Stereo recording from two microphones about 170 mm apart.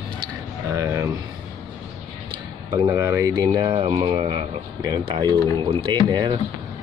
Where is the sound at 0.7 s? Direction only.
15° right (ahead or behind).